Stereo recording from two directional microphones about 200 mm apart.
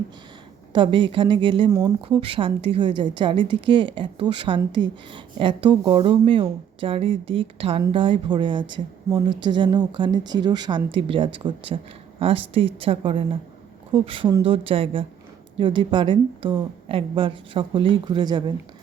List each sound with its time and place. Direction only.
0.7 s a woman's voice: 25° right (ahead or behind)